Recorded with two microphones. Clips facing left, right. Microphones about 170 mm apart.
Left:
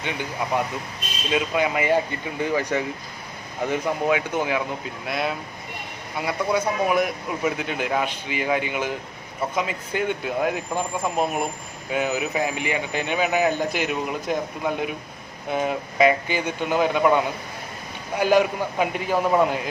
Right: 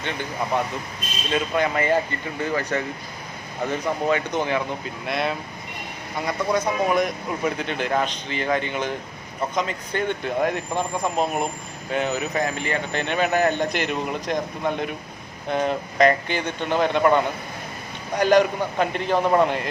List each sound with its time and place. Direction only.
0.0 s speech: 10° left (ahead or behind)